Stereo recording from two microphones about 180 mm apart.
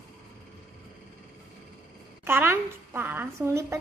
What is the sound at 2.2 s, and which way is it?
A woman's voice, 10° right (ahead or behind).